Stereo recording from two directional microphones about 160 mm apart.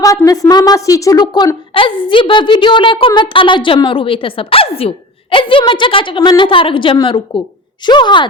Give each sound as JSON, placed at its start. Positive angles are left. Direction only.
{"t": 0.0, "sound": "a woman's voice", "side_deg": 20}